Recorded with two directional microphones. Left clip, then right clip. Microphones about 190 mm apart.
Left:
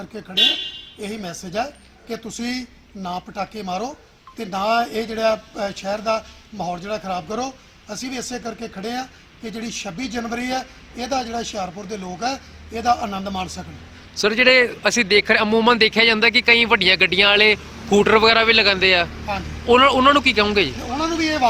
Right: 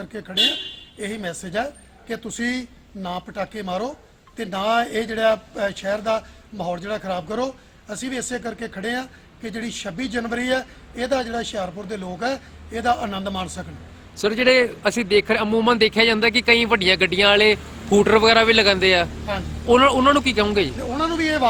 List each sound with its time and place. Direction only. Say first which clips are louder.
1.2 s a man's voice: even; 30° right (ahead or behind)
14.2 s a man's voice: left 2 dB; centre (ahead or behind)
21.0 s a sound: even; 30° right (ahead or behind)